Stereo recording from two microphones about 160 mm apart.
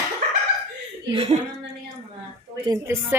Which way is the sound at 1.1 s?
40° right (ahead or behind).